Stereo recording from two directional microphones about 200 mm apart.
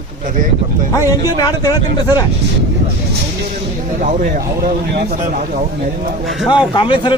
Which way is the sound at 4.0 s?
40° right (ahead or behind).